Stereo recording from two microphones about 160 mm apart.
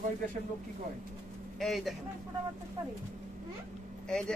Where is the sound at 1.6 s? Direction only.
Centre (ahead or behind).